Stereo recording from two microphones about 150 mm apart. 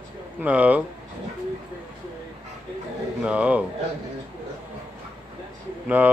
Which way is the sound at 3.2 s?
10° right (ahead or behind).